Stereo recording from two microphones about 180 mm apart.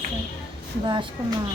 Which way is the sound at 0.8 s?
25° right (ahead or behind).